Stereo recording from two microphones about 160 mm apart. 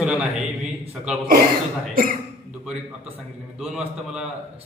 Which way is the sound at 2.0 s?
65° right (ahead or behind).